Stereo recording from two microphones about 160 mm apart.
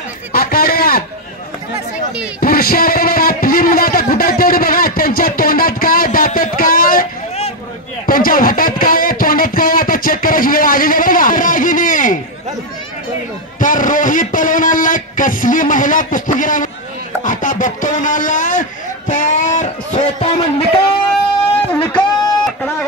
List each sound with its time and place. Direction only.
0.3 s a sound: 65° left (ahead or behind)
2.4 s speech: 65° left (ahead or behind)
8.1 s speech: 65° left (ahead or behind)
13.6 s speech: 55° left (ahead or behind); by 21.0 s 35° left (ahead or behind)
21.8 s guitar: 25° left (ahead or behind)